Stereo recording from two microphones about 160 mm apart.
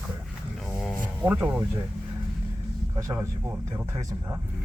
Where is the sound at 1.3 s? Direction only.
10° right (ahead or behind).